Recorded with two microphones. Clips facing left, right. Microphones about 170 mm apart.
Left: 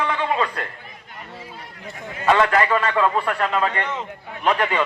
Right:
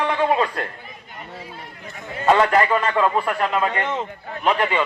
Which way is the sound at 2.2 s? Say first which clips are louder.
Right 1 dB; 30° right (ahead or behind).